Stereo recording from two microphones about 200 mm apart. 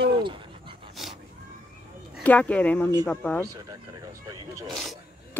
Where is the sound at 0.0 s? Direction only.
25° right (ahead or behind).